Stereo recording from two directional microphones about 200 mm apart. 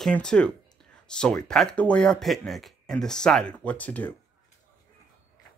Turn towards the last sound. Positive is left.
turn(degrees=10)  # may be behind; listen again after turning